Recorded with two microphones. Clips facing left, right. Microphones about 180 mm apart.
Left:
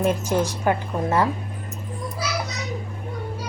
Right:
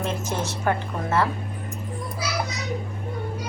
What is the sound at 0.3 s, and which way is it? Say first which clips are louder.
A woman's voice: left 4 dB; 10° left (ahead or behind).